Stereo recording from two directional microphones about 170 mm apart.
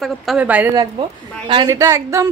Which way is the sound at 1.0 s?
30° right (ahead or behind).